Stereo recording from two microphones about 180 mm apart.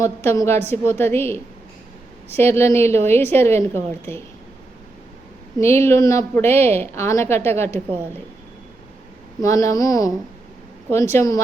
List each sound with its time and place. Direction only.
0.0 s a woman's voice: 15° left (ahead or behind)
5.5 s a woman's voice: 15° left (ahead or behind)
9.4 s a woman's voice: 20° left (ahead or behind)